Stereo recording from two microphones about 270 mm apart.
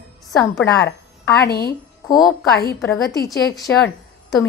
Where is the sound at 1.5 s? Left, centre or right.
Left.